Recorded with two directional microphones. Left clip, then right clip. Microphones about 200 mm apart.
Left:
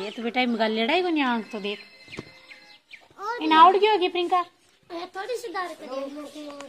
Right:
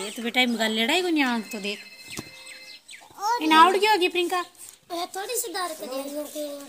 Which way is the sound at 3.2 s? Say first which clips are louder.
Right 5 dB; 30° right (ahead or behind).